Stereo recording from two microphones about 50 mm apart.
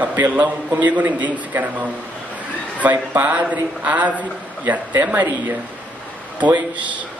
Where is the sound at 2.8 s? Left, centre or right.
Right.